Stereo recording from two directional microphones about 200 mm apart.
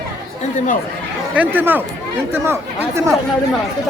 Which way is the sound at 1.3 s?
10° right (ahead or behind).